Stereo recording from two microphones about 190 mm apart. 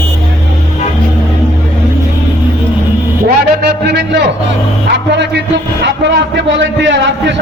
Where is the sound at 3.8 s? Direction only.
60° right (ahead or behind).